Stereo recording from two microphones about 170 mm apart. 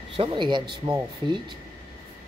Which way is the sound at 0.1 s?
30° right (ahead or behind).